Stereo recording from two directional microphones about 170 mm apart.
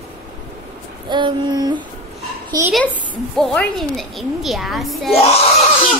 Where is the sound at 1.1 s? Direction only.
25° right (ahead or behind).